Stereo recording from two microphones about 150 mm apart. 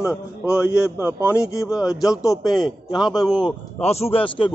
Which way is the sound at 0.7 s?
20° left (ahead or behind).